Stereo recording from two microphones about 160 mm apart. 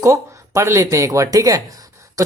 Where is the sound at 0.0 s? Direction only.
20° right (ahead or behind).